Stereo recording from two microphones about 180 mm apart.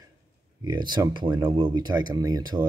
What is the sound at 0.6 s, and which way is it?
Speech, 25° right (ahead or behind).